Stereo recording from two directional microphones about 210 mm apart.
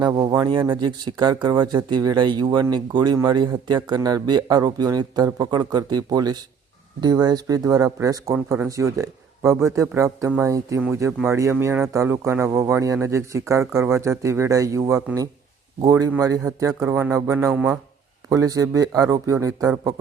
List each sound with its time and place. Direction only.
0.0 s speech: 20° right (ahead or behind)